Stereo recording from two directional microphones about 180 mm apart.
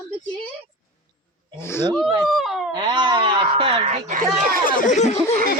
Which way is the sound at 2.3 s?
Centre (ahead or behind).